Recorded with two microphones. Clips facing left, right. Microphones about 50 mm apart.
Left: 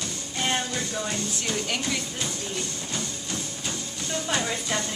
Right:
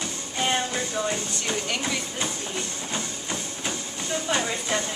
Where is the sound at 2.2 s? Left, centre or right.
Right.